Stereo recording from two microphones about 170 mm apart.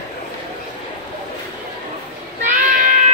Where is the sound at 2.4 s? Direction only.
55° right (ahead or behind).